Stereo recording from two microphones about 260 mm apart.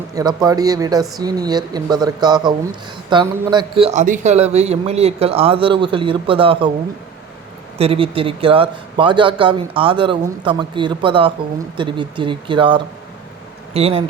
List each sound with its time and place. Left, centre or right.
0.1 s a man's voice: centre
7.8 s a man's voice: right